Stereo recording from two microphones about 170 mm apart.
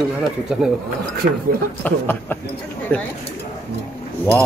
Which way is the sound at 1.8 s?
10° left (ahead or behind).